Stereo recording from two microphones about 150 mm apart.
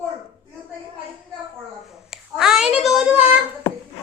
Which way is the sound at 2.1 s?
5° right (ahead or behind).